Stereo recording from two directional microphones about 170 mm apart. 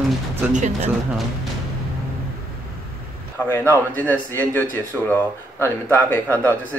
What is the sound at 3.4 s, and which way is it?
A man's voice, 15° left (ahead or behind).